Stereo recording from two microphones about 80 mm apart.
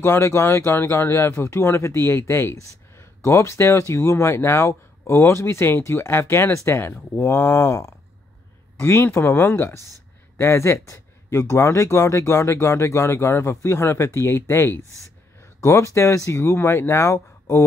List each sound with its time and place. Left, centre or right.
0.0 s speech: left